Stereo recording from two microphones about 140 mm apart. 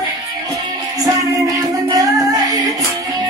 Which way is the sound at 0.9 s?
25° right (ahead or behind).